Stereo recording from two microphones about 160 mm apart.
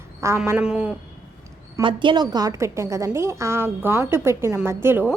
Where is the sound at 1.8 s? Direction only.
30° right (ahead or behind).